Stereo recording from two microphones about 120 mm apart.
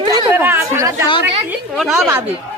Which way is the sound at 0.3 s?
15° right (ahead or behind).